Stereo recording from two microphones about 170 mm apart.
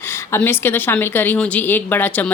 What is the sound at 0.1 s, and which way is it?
Speech, 15° left (ahead or behind).